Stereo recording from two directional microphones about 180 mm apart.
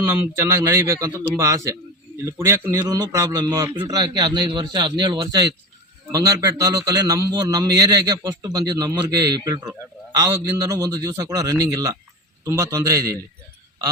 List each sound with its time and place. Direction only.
0.0 s a man's voice: 15° right (ahead or behind)